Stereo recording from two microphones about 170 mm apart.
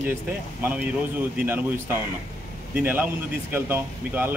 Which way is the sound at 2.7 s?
10° right (ahead or behind).